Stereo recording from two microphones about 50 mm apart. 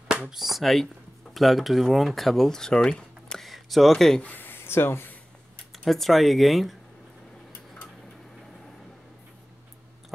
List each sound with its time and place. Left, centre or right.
0.2 s speech: centre
3.4 s speech: centre
4.2 s speech: left
5.7 s speech: centre